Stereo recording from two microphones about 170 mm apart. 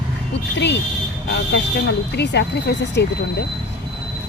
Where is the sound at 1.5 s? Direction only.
85° left.